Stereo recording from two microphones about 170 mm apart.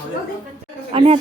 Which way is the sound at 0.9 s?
35° right (ahead or behind).